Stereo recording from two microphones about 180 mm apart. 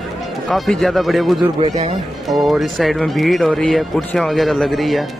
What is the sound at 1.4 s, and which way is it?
Speech, 35° right (ahead or behind).